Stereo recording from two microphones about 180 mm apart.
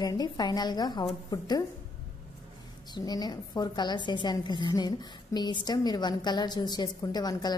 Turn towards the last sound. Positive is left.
turn(degrees=20)  # may be behind; listen again after turning